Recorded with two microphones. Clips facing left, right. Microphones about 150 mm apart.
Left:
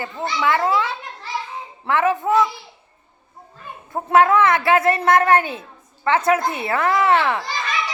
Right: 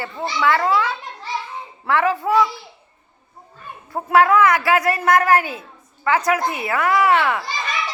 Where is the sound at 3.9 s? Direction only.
20° left (ahead or behind).